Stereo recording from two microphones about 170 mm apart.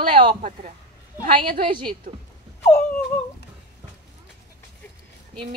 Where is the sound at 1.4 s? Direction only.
30° right (ahead or behind).